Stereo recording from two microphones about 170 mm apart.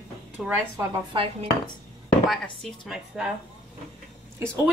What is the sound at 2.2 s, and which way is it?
Speech, centre (ahead or behind).